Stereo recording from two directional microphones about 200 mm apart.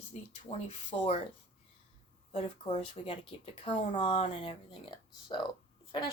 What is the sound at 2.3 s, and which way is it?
A woman's voice, 30° left (ahead or behind).